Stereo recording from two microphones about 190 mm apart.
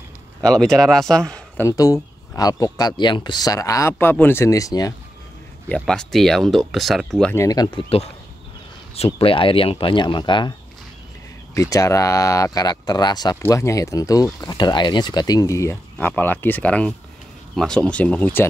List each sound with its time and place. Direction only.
0.4 s a man's voice: 5° left (ahead or behind)
1.7 s a man's voice: 20° left (ahead or behind)
5.9 s speech: centre (ahead or behind)
7.3 s speech: 20° left (ahead or behind)
11.5 s speech: 15° left (ahead or behind)